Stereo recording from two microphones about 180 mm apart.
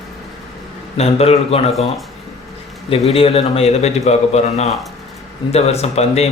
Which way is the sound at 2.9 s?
30° left (ahead or behind).